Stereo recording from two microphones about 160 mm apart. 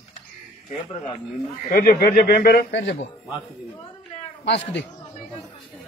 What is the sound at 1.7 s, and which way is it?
Speech, 65° left (ahead or behind).